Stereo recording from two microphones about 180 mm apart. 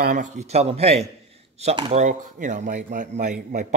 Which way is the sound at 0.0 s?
50° right (ahead or behind).